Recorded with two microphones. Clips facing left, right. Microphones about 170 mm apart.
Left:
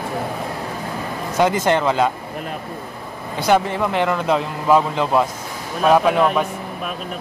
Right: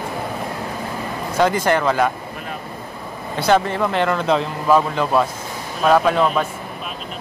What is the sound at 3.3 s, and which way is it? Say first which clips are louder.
Speech: even; 15° left (ahead or behind).